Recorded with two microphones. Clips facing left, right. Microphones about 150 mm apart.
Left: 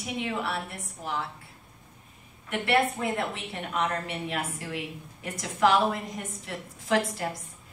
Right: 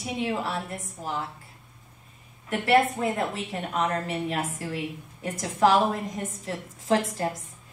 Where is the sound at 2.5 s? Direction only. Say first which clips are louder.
Right 4 dB; 40° right (ahead or behind).